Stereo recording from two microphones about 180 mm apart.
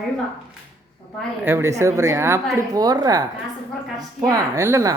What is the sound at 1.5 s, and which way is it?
A woman's voice, 15° right (ahead or behind).